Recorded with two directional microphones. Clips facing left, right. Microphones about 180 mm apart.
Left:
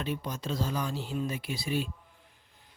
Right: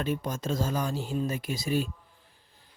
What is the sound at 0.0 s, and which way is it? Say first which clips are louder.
Speech: right 4 dB; 45° right (ahead or behind).